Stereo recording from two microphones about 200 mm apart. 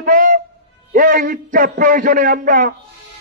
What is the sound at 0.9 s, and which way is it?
A man's voice, 40° right (ahead or behind).